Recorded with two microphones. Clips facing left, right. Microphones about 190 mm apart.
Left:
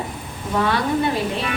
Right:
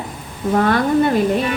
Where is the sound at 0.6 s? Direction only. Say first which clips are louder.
Right 4 dB; 50° right (ahead or behind).